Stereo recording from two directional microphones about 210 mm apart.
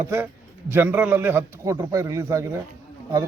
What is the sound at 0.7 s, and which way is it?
A man's voice, 10° right (ahead or behind).